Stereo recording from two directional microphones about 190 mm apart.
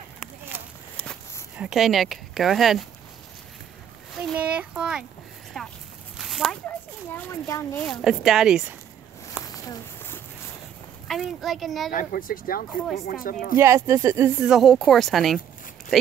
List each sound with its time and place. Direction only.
1.6 s speech: centre (ahead or behind)
4.3 s speech: 5° right (ahead or behind)
5.5 s walk: centre (ahead or behind)
6.1 s a sound: centre (ahead or behind)
7.2 s speech: 15° left (ahead or behind)
7.9 s speech: centre (ahead or behind)
9.5 s a sound: 15° left (ahead or behind)
11.1 s speech: centre (ahead or behind)
11.9 s speech: 45° left (ahead or behind)
13.6 s speech: 15° right (ahead or behind)
14.5 s speech: centre (ahead or behind)